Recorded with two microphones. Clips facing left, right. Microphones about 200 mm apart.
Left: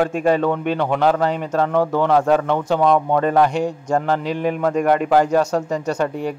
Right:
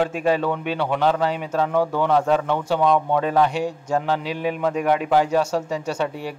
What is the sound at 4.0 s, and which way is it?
Speech, 50° left (ahead or behind).